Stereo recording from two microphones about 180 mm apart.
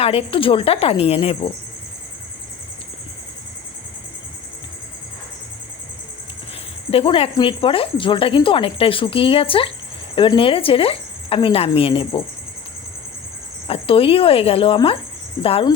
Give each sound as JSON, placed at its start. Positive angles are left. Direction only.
{"t": 0.0, "sound": "speech", "side_deg": 30}
{"t": 6.9, "sound": "speech", "side_deg": 30}
{"t": 13.7, "sound": "speech", "side_deg": 30}